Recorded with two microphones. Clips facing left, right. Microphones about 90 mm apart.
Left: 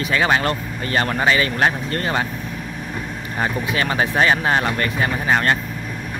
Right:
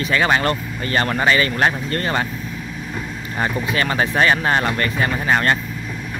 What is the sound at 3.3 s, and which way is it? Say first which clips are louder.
Speech: right 1 dB; 5° left (ahead or behind).